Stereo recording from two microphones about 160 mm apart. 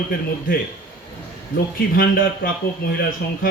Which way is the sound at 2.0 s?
65° left (ahead or behind).